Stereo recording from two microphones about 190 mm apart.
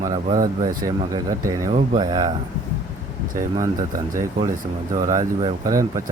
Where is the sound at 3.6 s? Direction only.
20° right (ahead or behind).